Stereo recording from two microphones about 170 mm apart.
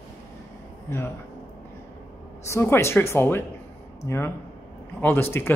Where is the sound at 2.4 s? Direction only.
15° left (ahead or behind).